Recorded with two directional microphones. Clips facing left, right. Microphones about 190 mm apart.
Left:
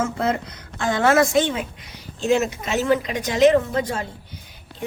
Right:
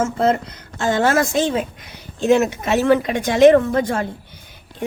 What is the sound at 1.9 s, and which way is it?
A woman's voice, 60° right (ahead or behind).